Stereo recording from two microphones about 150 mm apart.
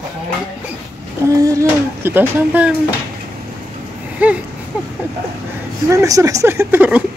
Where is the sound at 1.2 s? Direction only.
20° right (ahead or behind).